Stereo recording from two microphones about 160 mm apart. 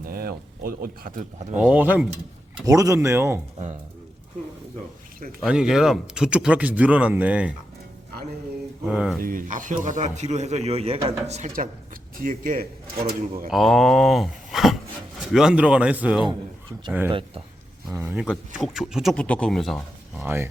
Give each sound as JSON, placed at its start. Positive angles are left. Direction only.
{"t": 0.0, "sound": "speech", "side_deg": -65}
{"t": 1.6, "sound": "speech", "side_deg": -10}
{"t": 2.6, "sound": "speech", "side_deg": -20}
{"t": 5.4, "sound": "speech", "side_deg": -5}
{"t": 8.8, "sound": "speech", "side_deg": -5}
{"t": 9.2, "sound": "a man's voice", "side_deg": -55}
{"t": 11.0, "sound": "speech", "side_deg": -20}
{"t": 11.3, "sound": "a man's voice", "side_deg": -45}
{"t": 12.1, "sound": "speech", "side_deg": -60}
{"t": 13.5, "sound": "speech", "side_deg": 0}
{"t": 17.1, "sound": "speech", "side_deg": -35}
{"t": 17.9, "sound": "speech", "side_deg": -10}
{"t": 18.3, "sound": "speech", "side_deg": 0}
{"t": 20.2, "sound": "speech", "side_deg": -15}